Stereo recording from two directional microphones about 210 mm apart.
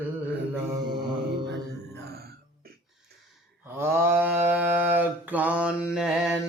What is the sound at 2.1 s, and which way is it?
Music, 45° right (ahead or behind).